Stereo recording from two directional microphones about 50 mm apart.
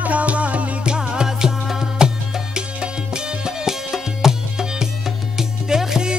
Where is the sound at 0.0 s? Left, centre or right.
Right.